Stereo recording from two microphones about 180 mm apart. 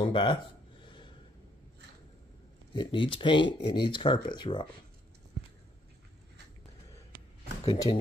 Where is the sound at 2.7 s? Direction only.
30° left (ahead or behind).